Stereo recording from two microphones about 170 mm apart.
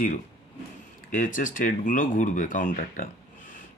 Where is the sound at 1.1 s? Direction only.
50° left (ahead or behind).